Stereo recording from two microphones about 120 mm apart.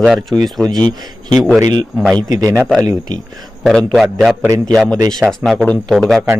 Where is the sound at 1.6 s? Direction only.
40° right (ahead or behind).